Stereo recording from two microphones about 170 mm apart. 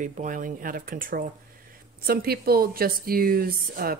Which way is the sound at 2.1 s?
65° right (ahead or behind).